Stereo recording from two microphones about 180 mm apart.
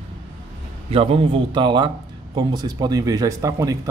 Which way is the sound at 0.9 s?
30° right (ahead or behind).